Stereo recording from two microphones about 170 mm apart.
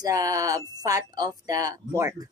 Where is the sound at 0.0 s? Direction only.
20° right (ahead or behind).